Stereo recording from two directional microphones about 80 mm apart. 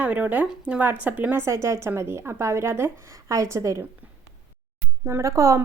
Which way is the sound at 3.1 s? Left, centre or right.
Right.